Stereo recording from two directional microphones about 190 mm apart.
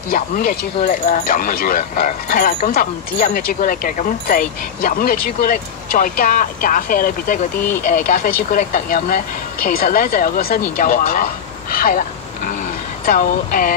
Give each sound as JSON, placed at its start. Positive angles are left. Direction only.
{"t": 0.1, "sound": "speech", "side_deg": 45}
{"t": 11.7, "sound": "a sound", "side_deg": 50}
{"t": 13.0, "sound": "speech", "side_deg": 50}